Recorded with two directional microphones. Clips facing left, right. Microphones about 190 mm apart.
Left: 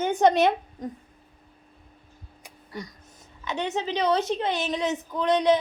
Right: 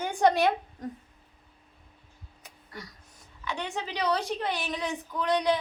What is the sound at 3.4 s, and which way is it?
A woman's voice, 20° left (ahead or behind).